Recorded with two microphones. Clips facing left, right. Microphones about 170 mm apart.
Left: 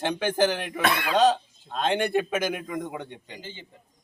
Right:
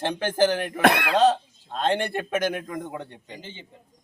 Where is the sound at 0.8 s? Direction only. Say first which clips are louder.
Right 5 dB; 70° right (ahead or behind).